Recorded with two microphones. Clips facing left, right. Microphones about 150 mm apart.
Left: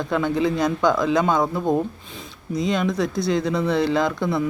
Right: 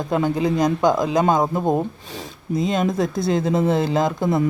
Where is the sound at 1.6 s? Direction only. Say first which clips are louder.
Right 1 dB; 20° right (ahead or behind).